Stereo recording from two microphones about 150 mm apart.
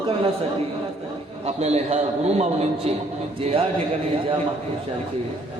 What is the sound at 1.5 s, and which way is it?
A man's voice, 45° right (ahead or behind).